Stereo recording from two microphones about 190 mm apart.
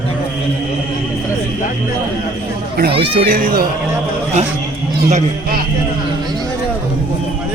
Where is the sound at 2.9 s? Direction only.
30° right (ahead or behind).